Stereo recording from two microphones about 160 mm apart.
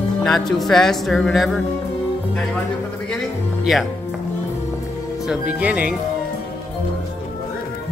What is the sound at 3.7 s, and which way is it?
Music, centre (ahead or behind).